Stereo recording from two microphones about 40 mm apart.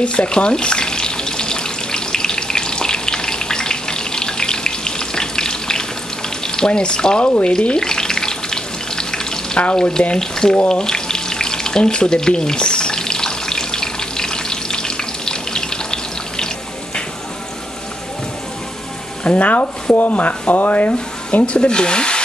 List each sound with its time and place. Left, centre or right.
0.0 s water tap: left
6.4 s frying: centre
9.8 s speech: centre
10.7 s frying: centre
19.2 s speech: left